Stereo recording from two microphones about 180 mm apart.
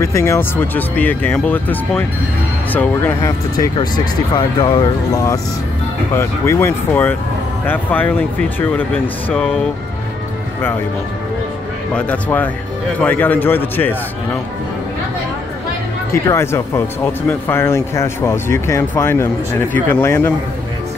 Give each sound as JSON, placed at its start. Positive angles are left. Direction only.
{"t": 0.0, "sound": "speech", "side_deg": 15}
{"t": 11.9, "sound": "speech", "side_deg": 5}
{"t": 16.1, "sound": "speech", "side_deg": 15}